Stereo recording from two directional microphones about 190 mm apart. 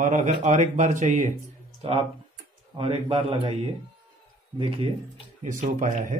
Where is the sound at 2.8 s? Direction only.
30° right (ahead or behind).